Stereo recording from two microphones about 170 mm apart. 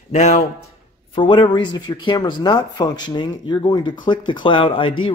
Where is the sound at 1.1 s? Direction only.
30° left (ahead or behind).